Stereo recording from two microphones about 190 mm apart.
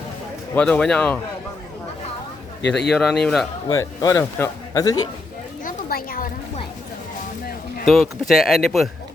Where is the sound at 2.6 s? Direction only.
65° left (ahead or behind).